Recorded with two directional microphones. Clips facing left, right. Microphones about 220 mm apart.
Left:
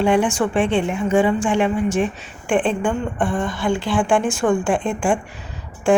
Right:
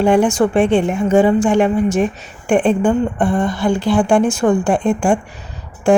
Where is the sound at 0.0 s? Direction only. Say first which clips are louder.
Right 4 dB; 40° right (ahead or behind).